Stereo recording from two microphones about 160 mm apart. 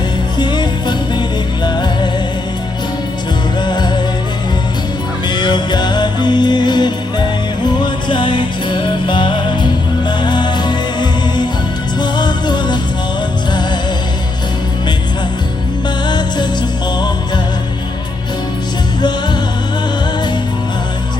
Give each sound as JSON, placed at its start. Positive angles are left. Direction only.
{"t": 0.3, "sound": "music", "side_deg": 25}
{"t": 3.6, "sound": "music", "side_deg": 25}
{"t": 5.3, "sound": "music", "side_deg": 30}
{"t": 16.0, "sound": "music", "side_deg": 25}